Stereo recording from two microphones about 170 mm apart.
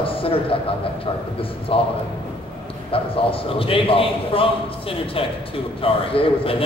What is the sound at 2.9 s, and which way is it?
A man's voice, 35° left (ahead or behind).